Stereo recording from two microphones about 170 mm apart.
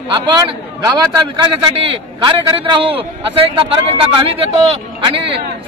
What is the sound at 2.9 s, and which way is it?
A man's voice, 30° right (ahead or behind).